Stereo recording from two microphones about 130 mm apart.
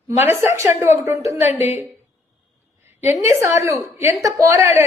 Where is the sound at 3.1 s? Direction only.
20° right (ahead or behind).